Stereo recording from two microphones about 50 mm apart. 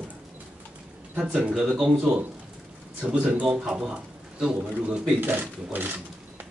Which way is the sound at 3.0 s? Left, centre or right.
Centre.